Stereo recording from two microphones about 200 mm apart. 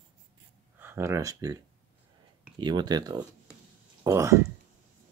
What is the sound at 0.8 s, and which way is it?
Speech, 10° right (ahead or behind).